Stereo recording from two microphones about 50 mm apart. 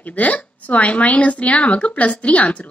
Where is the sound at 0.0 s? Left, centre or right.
Left.